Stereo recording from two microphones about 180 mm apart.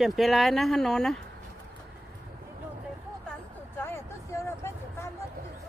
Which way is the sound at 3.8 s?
15° left (ahead or behind).